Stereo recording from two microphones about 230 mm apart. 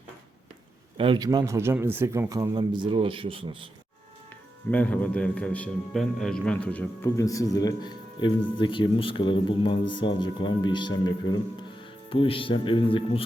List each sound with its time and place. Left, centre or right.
0.9 s a man's voice: right
4.7 s a man's voice: centre
12.0 s speech: left